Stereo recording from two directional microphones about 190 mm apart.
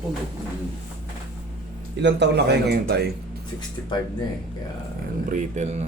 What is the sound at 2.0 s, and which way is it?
Speech, 60° right (ahead or behind).